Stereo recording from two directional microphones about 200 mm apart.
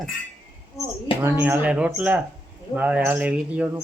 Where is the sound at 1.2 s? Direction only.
10° right (ahead or behind).